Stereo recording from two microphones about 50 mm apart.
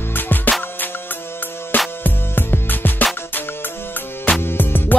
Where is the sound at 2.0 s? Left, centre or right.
Left.